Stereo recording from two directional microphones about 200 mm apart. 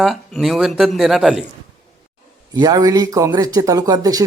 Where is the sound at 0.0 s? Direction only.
Centre (ahead or behind).